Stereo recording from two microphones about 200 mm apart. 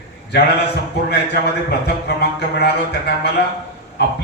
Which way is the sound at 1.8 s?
55° left (ahead or behind).